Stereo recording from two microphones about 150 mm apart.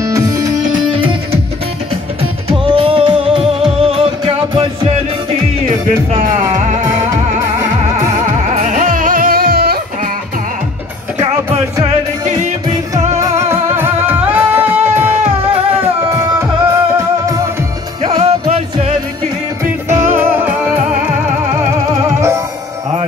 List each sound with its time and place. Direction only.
0.0 s music: 20° right (ahead or behind)
2.5 s music: 35° right (ahead or behind)
5.7 s music: 25° right (ahead or behind)
8.6 s music: 60° right (ahead or behind); by 9.8 s 90° right
11.2 s music: 40° right (ahead or behind)
13.2 s music: 15° right (ahead or behind)
18.2 s music: 45° right (ahead or behind)
19.6 s music: 15° right (ahead or behind)